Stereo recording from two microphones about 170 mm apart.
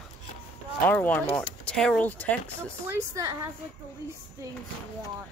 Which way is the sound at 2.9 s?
15° right (ahead or behind).